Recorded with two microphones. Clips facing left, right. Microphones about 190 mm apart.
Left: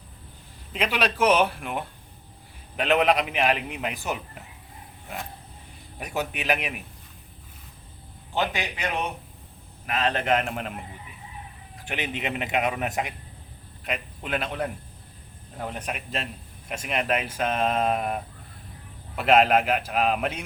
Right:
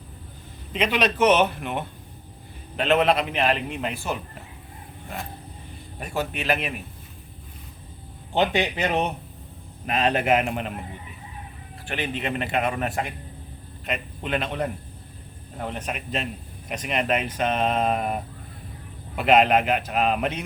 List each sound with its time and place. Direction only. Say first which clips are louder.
0.7 s a man's voice: right 3 dB; 5° left (ahead or behind)
6.0 s a man's voice: right 1 dB; 15° left (ahead or behind)
8.3 s speech: right 5 dB; 25° right (ahead or behind)
9.8 s a man's voice: right 3 dB; 20° right (ahead or behind); by 10.8 s centre (ahead or behind)
11.9 s a man's voice: right 2 dB; 15° left (ahead or behind); by 20.4 s centre (ahead or behind)